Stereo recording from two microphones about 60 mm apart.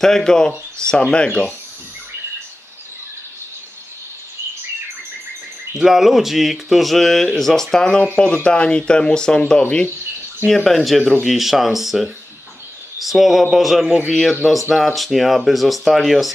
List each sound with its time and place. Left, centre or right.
0.0 s speech: centre
5.8 s speech: centre
10.5 s speech: centre